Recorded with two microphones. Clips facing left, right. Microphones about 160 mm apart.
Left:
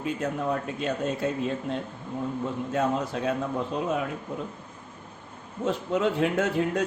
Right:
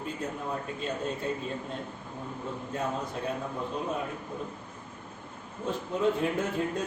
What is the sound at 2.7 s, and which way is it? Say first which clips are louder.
Speech: left 6 dB; 90° left.